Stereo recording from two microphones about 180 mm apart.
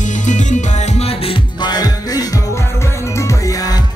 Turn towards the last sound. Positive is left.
turn(degrees=20)  # may be behind; listen again after turning